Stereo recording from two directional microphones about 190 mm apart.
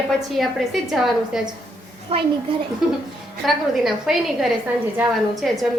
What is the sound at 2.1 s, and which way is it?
Speech, 30° right (ahead or behind).